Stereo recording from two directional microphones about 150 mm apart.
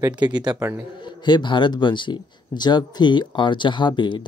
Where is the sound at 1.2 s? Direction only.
30° left (ahead or behind).